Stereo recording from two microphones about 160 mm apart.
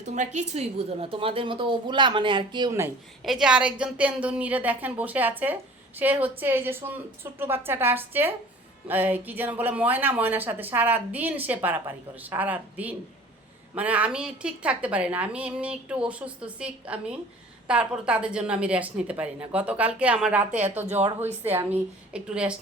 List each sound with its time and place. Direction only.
0.0 s a woman's voice: 45° right (ahead or behind); by 2.7 s 30° right (ahead or behind)
3.2 s speech: 5° right (ahead or behind)
21.0 s speech: 45° right (ahead or behind)
21.5 s speech: 15° right (ahead or behind)